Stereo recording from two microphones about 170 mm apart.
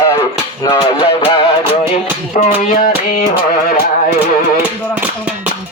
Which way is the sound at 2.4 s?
45° left (ahead or behind).